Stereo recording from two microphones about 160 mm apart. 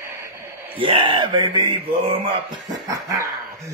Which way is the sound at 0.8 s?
30° right (ahead or behind).